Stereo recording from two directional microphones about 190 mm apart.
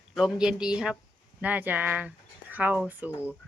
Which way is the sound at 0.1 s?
Centre (ahead or behind).